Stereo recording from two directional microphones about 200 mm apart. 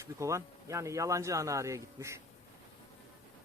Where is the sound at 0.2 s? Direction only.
15° right (ahead or behind).